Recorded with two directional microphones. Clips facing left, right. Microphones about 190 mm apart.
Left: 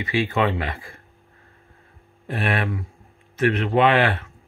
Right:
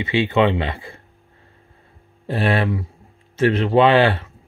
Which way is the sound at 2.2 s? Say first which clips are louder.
Right 5 dB; 30° right (ahead or behind).